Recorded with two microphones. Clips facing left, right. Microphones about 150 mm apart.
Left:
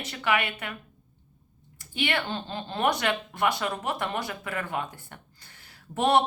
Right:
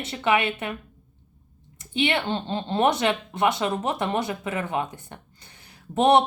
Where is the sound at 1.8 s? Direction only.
20° right (ahead or behind).